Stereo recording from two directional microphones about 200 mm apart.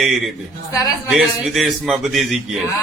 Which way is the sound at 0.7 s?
15° left (ahead or behind).